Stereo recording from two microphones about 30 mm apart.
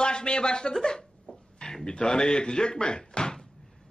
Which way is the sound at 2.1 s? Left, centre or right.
Left.